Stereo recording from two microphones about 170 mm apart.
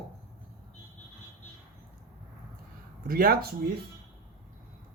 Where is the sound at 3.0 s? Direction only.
60° right (ahead or behind).